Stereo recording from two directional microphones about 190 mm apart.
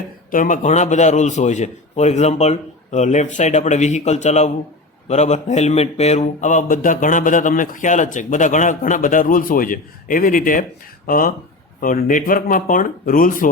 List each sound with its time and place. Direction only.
0.3 s a man's voice: 45° left (ahead or behind)
5.0 s mantra: 35° left (ahead or behind)